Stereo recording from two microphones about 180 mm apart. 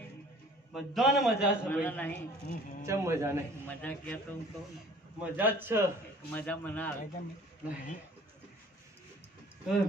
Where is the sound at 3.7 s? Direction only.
10° left (ahead or behind).